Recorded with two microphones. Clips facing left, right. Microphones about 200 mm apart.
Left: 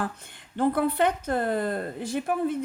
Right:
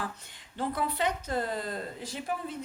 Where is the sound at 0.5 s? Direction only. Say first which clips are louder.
Left 8 dB; 55° left (ahead or behind).